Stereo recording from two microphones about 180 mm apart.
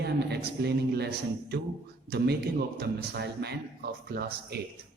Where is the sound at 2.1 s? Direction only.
65° right (ahead or behind).